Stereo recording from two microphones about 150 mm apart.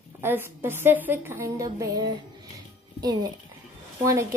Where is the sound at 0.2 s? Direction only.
15° right (ahead or behind).